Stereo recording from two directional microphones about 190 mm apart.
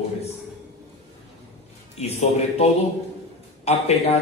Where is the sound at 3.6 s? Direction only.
35° left (ahead or behind).